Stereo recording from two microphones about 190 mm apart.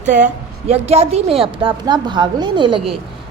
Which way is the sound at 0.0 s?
40° right (ahead or behind).